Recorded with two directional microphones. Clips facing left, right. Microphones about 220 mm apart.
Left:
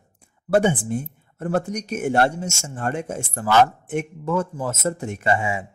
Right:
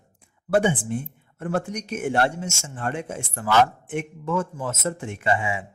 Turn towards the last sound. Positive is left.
turn(degrees=40)  # may be behind; listen again after turning